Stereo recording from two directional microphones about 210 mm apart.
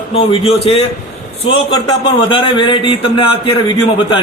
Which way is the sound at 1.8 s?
25° left (ahead or behind).